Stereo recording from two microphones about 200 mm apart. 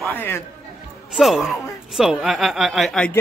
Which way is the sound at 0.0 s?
10° left (ahead or behind).